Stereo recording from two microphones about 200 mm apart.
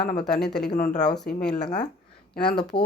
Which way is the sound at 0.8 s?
40° left (ahead or behind).